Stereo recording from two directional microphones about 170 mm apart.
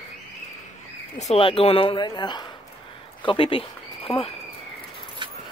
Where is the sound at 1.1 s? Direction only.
35° left (ahead or behind).